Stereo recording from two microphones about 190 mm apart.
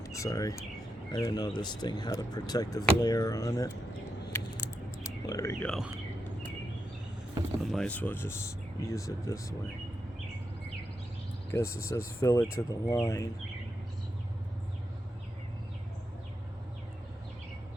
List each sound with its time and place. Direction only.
0.0 s bird: 15° left (ahead or behind)
1.1 s speech: 20° left (ahead or behind)
4.3 s a sound: 10° left (ahead or behind)
5.6 s speech: centre (ahead or behind)
7.6 s speech: centre (ahead or behind)
11.5 s speech: 15° left (ahead or behind)